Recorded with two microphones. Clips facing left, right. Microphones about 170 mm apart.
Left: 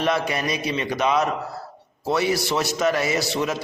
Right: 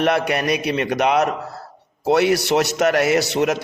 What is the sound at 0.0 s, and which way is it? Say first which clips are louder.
A man's voice: right 4 dB; 65° right (ahead or behind).